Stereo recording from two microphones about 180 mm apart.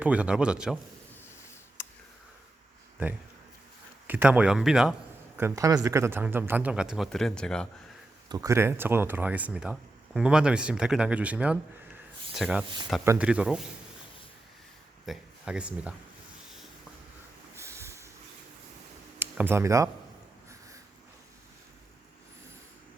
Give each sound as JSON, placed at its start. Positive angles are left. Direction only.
{"t": 0.0, "sound": "speech", "side_deg": -5}
{"t": 1.8, "sound": "tick", "side_deg": 15}
{"t": 4.0, "sound": "speech", "side_deg": -10}
{"t": 5.4, "sound": "speech", "side_deg": -15}
{"t": 8.3, "sound": "speech", "side_deg": -15}
{"t": 15.0, "sound": "speech", "side_deg": -5}
{"t": 17.5, "sound": "a sound", "side_deg": -15}
{"t": 19.2, "sound": "speech", "side_deg": -10}